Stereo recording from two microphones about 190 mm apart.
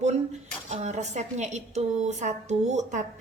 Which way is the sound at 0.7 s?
35° right (ahead or behind).